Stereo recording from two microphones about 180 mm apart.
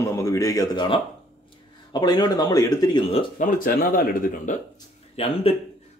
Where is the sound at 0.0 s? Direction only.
15° left (ahead or behind).